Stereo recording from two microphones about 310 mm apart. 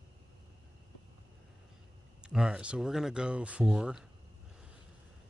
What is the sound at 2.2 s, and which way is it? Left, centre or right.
Speech, centre.